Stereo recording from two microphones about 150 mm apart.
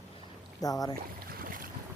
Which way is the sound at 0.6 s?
25° left (ahead or behind).